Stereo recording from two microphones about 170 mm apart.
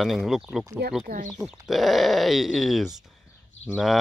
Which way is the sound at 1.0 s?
50° right (ahead or behind).